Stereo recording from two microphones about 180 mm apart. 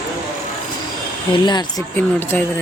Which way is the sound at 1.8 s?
10° left (ahead or behind).